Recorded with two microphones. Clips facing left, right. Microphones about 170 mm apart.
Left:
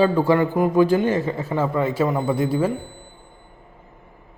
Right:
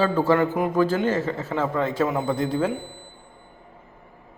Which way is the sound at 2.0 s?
Centre (ahead or behind).